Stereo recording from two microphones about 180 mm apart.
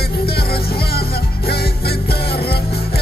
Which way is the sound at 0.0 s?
60° left (ahead or behind).